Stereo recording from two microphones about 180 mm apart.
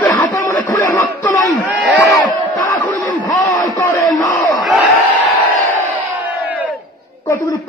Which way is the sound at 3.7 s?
15° left (ahead or behind).